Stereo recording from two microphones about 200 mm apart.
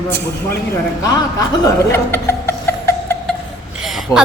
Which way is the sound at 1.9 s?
10° left (ahead or behind).